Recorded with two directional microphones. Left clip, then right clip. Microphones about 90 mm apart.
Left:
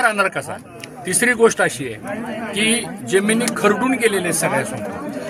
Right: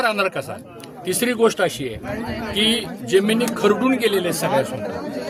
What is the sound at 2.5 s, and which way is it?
A man's voice, centre (ahead or behind).